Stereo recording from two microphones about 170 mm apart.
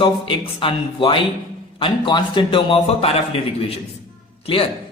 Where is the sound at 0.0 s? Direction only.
30° left (ahead or behind).